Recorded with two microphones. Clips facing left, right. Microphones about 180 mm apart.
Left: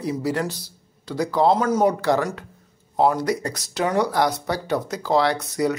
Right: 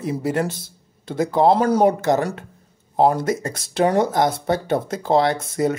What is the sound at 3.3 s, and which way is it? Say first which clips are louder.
Speech: right 1 dB; 45° right (ahead or behind).